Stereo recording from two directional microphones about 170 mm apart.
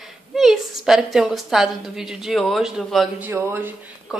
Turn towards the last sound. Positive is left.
turn(degrees=-15)  # may be behind; listen again after turning